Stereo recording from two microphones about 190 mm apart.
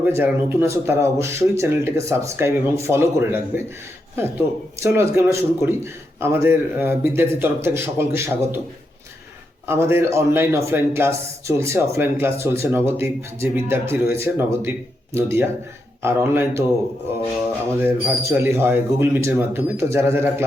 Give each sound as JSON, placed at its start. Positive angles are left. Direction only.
{"t": 0.0, "sound": "a man's voice", "side_deg": -10}
{"t": 9.6, "sound": "a man's voice", "side_deg": -15}
{"t": 17.8, "sound": "a man's voice", "side_deg": -15}